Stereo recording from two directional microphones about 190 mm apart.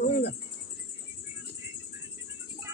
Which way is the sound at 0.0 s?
60° left (ahead or behind).